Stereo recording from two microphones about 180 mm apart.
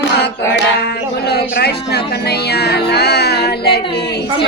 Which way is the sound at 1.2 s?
65° left (ahead or behind).